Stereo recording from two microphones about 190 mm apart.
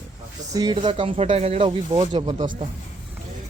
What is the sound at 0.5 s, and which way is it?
Speech, 20° right (ahead or behind).